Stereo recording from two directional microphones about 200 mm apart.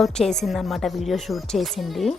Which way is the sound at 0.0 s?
5° left (ahead or behind).